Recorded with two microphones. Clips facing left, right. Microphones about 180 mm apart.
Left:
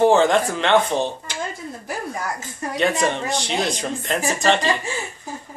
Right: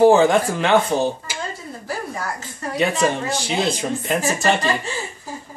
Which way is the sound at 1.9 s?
20° left (ahead or behind).